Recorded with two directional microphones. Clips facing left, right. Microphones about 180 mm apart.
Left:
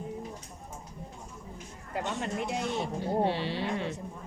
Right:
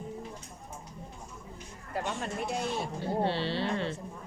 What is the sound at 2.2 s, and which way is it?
Speech, 20° left (ahead or behind).